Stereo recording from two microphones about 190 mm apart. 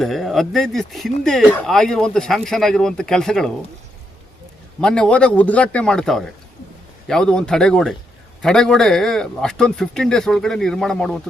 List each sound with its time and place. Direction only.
0.0 s a man's voice: centre (ahead or behind)
4.8 s a man's voice: 5° left (ahead or behind)